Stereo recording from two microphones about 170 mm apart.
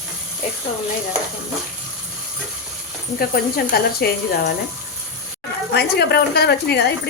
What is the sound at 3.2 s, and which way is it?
Speech, 60° left (ahead or behind).